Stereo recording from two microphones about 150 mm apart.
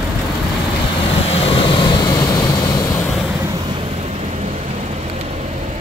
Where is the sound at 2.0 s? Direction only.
20° left (ahead or behind).